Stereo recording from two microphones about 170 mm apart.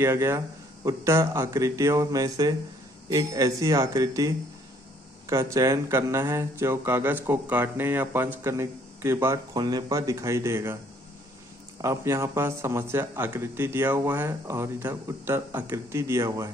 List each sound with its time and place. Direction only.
0.0 s speech: 15° right (ahead or behind)
11.8 s speech: 15° right (ahead or behind)